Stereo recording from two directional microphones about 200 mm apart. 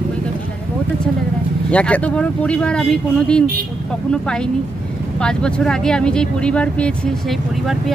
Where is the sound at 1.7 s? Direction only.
5° left (ahead or behind).